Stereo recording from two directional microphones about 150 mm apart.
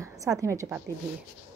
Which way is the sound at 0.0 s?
20° right (ahead or behind).